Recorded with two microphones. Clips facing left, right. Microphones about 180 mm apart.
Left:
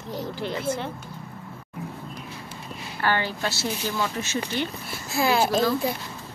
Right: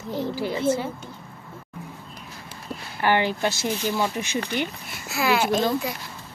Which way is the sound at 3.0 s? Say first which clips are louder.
Right 4 dB; 15° right (ahead or behind).